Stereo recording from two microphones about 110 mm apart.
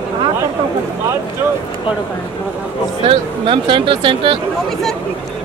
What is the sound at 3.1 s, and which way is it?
Speech, 55° right (ahead or behind).